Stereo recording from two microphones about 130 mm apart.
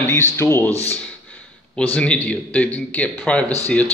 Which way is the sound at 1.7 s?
10° left (ahead or behind).